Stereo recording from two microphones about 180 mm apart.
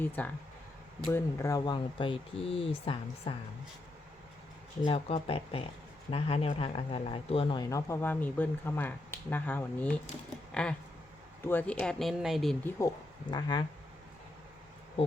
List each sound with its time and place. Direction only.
0.2 s speech: 10° left (ahead or behind); by 3.3 s 30° left (ahead or behind)
4.9 s speech: 30° left (ahead or behind); by 12.5 s centre (ahead or behind)
13.3 s speech: 25° left (ahead or behind)